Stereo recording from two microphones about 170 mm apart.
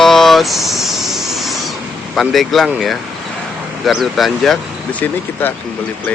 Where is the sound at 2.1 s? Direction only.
Centre (ahead or behind).